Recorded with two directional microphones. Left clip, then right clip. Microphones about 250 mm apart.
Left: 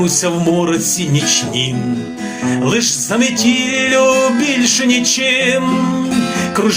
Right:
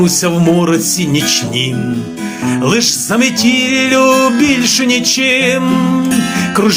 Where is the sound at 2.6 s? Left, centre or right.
Right.